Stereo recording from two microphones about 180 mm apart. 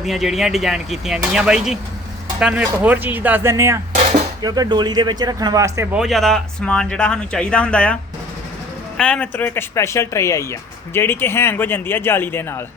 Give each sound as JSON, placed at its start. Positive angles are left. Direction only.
{"t": 0.0, "sound": "a man's voice", "side_deg": 0}
{"t": 6.0, "sound": "speech", "side_deg": 0}
{"t": 9.0, "sound": "speech", "side_deg": 5}